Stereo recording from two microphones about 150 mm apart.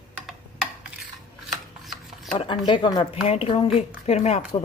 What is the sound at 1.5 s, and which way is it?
Chopping, centre (ahead or behind).